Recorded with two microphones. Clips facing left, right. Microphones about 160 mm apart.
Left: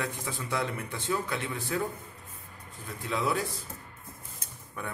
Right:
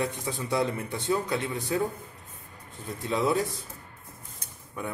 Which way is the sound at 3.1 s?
25° right (ahead or behind).